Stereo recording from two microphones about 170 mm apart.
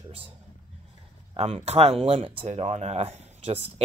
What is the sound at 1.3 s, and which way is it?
Speech, 40° right (ahead or behind).